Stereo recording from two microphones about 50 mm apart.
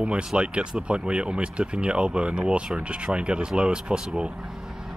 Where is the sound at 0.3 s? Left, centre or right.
Centre.